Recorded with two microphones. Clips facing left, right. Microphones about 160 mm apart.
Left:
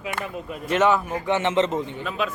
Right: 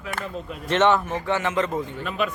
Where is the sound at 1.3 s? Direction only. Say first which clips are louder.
Left 4 dB; 25° left (ahead or behind).